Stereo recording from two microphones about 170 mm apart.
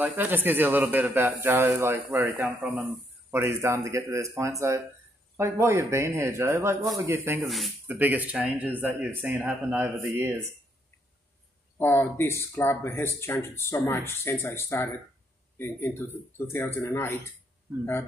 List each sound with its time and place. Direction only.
0.0 s a man's voice: 10° right (ahead or behind)
7.4 s speech: centre (ahead or behind)
7.8 s a man's voice: 10° right (ahead or behind)
11.8 s speech: 15° left (ahead or behind)